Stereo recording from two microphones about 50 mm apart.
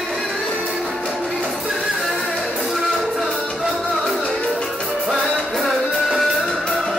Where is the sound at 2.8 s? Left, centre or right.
Centre.